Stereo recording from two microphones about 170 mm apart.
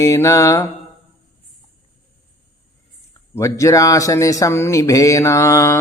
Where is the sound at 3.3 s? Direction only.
20° left (ahead or behind).